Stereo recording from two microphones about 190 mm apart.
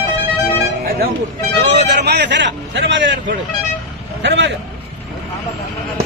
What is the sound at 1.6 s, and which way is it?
Speech, 65° right (ahead or behind).